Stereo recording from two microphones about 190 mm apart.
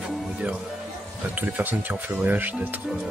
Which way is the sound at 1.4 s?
10° right (ahead or behind).